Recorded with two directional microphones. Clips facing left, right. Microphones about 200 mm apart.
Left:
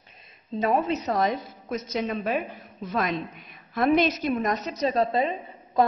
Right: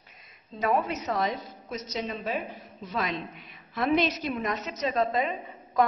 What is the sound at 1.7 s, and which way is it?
A woman's voice, 55° left (ahead or behind).